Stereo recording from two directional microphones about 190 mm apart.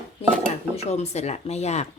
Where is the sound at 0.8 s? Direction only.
35° left (ahead or behind).